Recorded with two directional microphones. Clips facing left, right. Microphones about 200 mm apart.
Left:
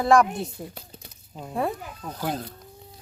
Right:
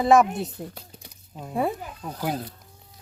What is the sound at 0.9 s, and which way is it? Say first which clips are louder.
Crumpling: left 1 dB; 10° right (ahead or behind).